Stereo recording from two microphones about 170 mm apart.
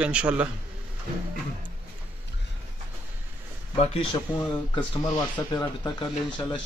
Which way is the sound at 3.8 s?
35° left (ahead or behind).